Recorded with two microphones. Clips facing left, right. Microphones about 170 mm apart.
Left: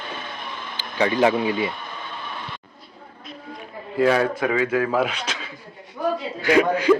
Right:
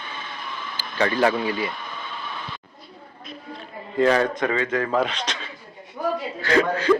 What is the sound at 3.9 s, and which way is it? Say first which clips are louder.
A man's voice: even; 5° left (ahead or behind).